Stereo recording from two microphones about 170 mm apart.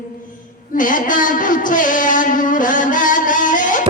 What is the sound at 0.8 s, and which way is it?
Music, 50° left (ahead or behind).